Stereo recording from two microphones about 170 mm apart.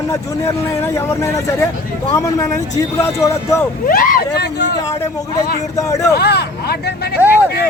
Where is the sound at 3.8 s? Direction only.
55° left (ahead or behind).